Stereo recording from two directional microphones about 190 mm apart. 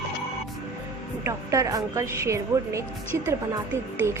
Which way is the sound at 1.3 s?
15° right (ahead or behind).